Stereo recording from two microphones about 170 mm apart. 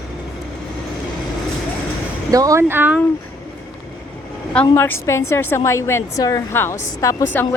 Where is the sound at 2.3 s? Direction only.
20° right (ahead or behind).